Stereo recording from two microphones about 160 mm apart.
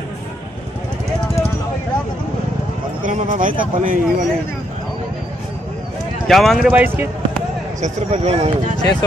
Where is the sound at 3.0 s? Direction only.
55° right (ahead or behind).